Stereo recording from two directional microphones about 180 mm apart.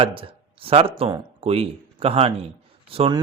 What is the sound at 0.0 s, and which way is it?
A man's voice, 30° right (ahead or behind).